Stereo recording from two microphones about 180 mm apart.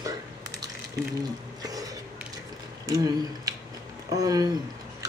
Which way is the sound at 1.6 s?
20° right (ahead or behind).